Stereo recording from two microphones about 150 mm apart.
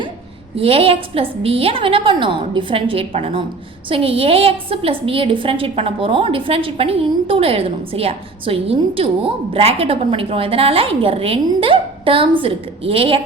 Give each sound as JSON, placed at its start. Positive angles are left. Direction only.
{"t": 0.5, "sound": "a woman's voice", "side_deg": -40}